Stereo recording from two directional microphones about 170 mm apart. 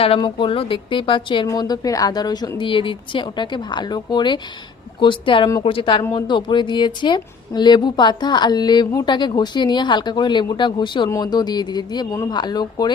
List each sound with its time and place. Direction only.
0.0 s a woman's voice: 30° left (ahead or behind)